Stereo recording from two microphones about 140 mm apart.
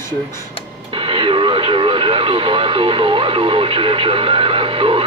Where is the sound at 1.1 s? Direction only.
40° right (ahead or behind).